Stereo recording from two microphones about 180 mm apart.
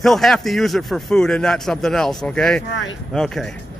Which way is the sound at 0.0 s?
Centre (ahead or behind).